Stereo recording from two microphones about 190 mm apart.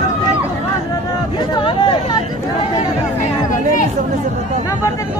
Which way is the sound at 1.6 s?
25° left (ahead or behind).